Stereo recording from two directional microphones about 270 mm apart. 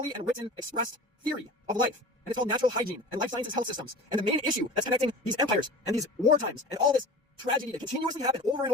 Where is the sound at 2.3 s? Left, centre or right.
Centre.